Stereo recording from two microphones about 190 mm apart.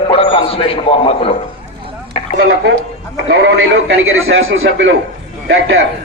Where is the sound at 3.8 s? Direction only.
90° right.